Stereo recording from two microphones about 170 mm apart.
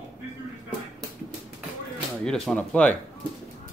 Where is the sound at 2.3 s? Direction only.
5° left (ahead or behind).